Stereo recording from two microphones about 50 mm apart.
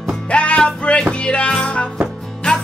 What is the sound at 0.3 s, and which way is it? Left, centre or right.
Music, left.